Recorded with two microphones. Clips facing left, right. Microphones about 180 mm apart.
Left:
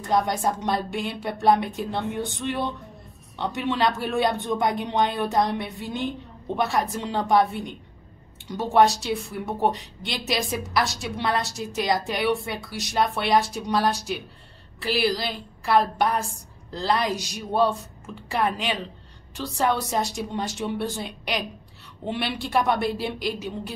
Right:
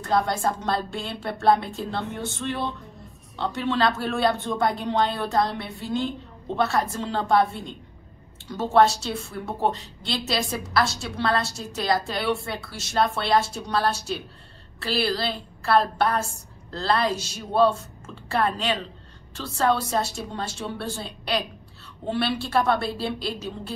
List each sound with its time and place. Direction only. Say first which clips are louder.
0.1 s a woman's voice: even; 15° left (ahead or behind)